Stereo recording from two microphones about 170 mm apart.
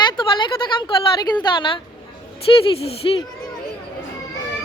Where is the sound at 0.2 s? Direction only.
25° left (ahead or behind).